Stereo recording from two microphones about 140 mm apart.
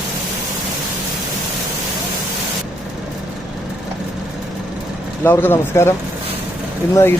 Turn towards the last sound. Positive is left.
turn(degrees=20)  # may be behind; listen again after turning